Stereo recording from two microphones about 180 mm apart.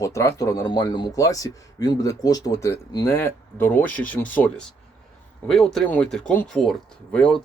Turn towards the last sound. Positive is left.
turn(degrees=5)  # may be behind; listen again after turning